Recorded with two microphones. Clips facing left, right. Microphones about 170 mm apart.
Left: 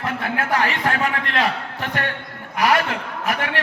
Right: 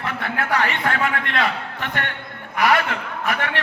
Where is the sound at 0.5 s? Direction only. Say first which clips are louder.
Even; 35° left (ahead or behind).